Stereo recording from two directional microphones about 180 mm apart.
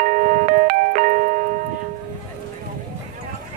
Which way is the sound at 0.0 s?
45° right (ahead or behind).